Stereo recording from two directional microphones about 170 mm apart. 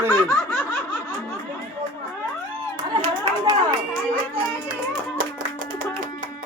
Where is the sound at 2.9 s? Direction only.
25° right (ahead or behind).